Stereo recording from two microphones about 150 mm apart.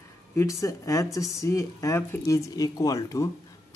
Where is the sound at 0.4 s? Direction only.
20° left (ahead or behind).